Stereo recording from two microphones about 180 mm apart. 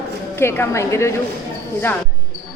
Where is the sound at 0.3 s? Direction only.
15° left (ahead or behind).